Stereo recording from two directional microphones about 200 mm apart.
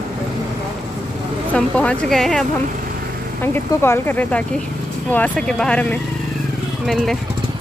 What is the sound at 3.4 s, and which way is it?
Speech, 10° left (ahead or behind).